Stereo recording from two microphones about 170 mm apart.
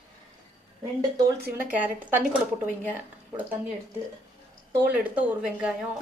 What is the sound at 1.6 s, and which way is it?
Speech, 10° right (ahead or behind).